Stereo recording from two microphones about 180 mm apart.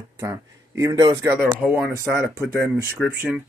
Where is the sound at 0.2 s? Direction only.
20° right (ahead or behind).